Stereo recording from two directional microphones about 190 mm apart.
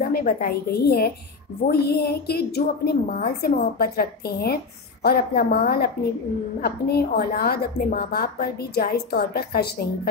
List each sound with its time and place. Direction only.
0.1 s a woman's voice: 50° left (ahead or behind)